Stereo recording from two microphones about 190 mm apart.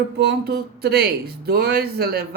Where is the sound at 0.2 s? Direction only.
60° right (ahead or behind).